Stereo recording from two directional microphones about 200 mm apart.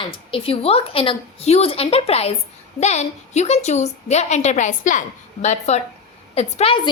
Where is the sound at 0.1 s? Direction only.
25° left (ahead or behind).